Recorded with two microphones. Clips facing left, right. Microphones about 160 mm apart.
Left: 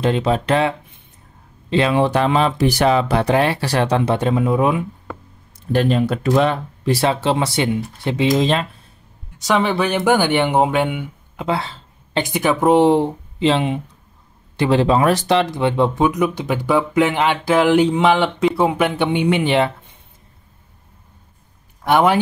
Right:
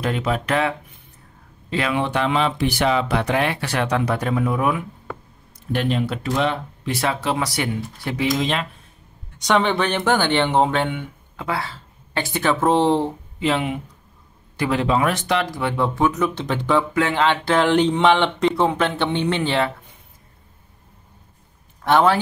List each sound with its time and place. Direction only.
0.0 s speech: 25° left (ahead or behind)
5.7 s speech: 40° left (ahead or behind); by 8.3 s 25° left (ahead or behind)
8.4 s speech: 35° left (ahead or behind)
9.4 s speech: 5° left (ahead or behind)
11.4 s speech: 25° left (ahead or behind)
13.4 s speech: 25° left (ahead or behind)
21.8 s speech: 15° left (ahead or behind)